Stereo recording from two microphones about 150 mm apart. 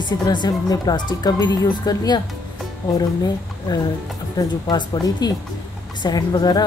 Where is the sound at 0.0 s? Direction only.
30° left (ahead or behind).